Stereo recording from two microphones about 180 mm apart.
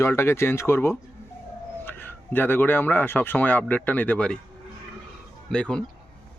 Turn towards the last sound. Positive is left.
turn(degrees=5)  # may be behind; listen again after turning